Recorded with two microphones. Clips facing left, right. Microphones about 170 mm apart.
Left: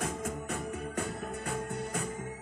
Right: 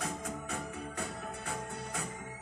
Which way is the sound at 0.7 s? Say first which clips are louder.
Left 4 dB; 50° left (ahead or behind).